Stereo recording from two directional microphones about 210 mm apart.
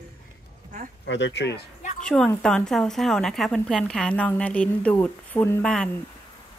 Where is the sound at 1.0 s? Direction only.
60° left (ahead or behind).